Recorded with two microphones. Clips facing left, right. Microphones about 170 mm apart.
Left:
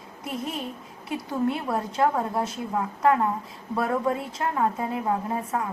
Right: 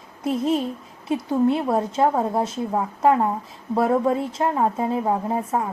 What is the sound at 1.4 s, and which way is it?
A woman's voice, 25° right (ahead or behind).